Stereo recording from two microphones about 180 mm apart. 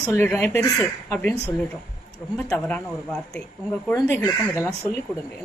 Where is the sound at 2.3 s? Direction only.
10° left (ahead or behind).